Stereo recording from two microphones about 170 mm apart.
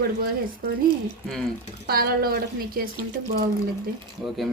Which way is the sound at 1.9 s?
60° right (ahead or behind).